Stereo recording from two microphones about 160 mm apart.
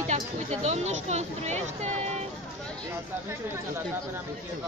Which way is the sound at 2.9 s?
15° right (ahead or behind).